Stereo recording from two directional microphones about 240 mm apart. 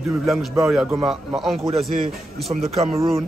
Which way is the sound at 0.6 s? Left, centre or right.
Centre.